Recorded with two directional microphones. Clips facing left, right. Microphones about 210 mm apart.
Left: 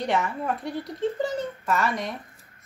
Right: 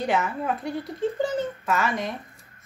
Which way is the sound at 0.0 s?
Centre (ahead or behind).